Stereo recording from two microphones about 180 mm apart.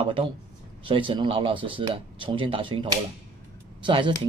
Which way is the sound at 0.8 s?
30° right (ahead or behind).